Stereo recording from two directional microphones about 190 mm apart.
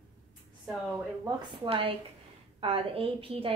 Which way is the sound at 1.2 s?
30° right (ahead or behind).